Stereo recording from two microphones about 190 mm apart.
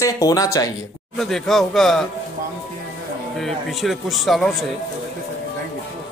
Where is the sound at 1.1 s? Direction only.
Centre (ahead or behind).